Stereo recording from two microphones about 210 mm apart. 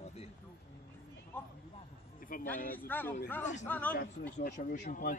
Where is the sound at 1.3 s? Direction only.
10° left (ahead or behind).